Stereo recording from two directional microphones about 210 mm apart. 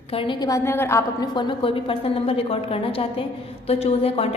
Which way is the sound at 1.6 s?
25° left (ahead or behind).